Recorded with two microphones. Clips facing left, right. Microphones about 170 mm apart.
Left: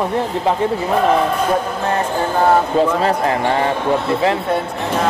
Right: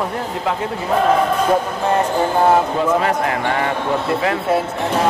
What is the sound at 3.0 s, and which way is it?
Speech, 30° left (ahead or behind).